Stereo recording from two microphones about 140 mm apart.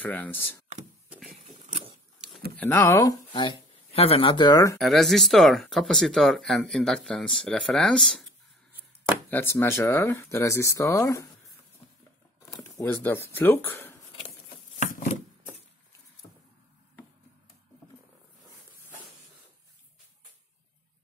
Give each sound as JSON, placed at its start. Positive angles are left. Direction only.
{"t": 0.0, "sound": "speech", "side_deg": 10}
{"t": 1.0, "sound": "a sound", "side_deg": -5}
{"t": 2.5, "sound": "speech", "side_deg": 10}
{"t": 2.8, "sound": "speech", "side_deg": 25}
{"t": 3.3, "sound": "speech", "side_deg": 40}
{"t": 4.7, "sound": "speech", "side_deg": 0}
{"t": 9.3, "sound": "speech", "side_deg": 15}
{"t": 12.4, "sound": "a sound", "side_deg": 25}
{"t": 13.0, "sound": "speech", "side_deg": 15}
{"t": 14.8, "sound": "chopping", "side_deg": 65}